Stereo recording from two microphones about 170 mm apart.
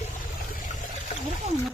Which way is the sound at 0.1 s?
55° left (ahead or behind).